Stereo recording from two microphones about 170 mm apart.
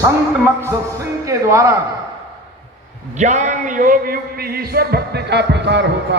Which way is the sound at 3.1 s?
45° right (ahead or behind).